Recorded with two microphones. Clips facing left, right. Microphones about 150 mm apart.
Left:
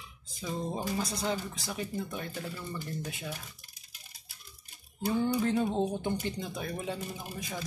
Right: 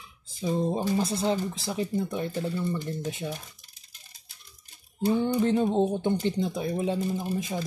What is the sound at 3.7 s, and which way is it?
Music, 10° left (ahead or behind).